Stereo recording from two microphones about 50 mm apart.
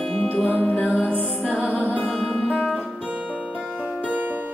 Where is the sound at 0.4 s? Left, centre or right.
Left.